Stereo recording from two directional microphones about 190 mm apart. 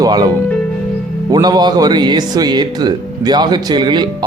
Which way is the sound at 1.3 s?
20° right (ahead or behind).